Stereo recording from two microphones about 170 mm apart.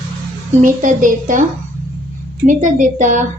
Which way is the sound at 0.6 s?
50° right (ahead or behind).